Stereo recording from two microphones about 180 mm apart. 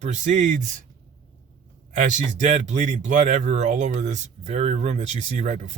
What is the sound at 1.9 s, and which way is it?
Speech, 45° right (ahead or behind).